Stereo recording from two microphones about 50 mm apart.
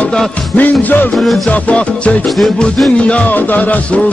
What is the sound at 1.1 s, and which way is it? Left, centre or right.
Music, centre.